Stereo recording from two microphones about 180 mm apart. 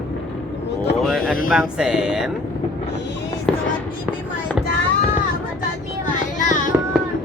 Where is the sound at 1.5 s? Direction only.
5° right (ahead or behind).